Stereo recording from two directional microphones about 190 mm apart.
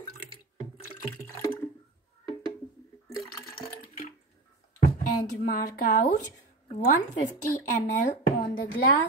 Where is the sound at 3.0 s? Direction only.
15° left (ahead or behind).